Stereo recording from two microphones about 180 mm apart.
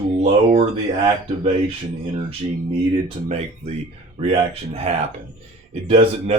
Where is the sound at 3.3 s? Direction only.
35° right (ahead or behind).